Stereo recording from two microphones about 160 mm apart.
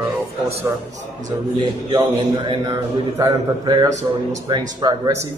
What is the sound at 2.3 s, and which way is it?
A man's voice, 25° right (ahead or behind).